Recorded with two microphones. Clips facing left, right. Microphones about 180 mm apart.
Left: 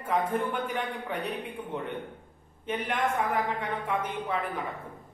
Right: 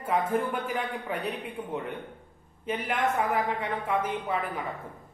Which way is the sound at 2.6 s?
5° right (ahead or behind).